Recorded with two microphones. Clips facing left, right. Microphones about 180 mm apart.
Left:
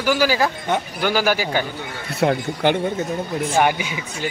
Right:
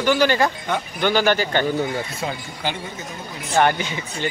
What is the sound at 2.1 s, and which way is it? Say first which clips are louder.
Speech: left 9 dB; 65° left (ahead or behind).